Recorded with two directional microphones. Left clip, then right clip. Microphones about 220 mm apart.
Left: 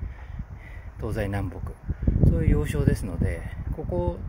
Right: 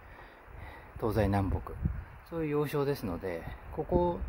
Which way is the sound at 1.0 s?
10° right (ahead or behind).